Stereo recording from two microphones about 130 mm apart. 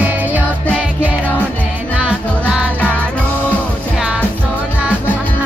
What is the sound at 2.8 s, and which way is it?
Music, 10° left (ahead or behind).